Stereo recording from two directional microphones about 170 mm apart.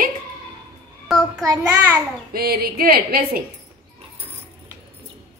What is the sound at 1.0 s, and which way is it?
Child singing, centre (ahead or behind).